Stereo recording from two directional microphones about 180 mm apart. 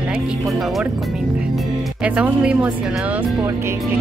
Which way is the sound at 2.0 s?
5° right (ahead or behind).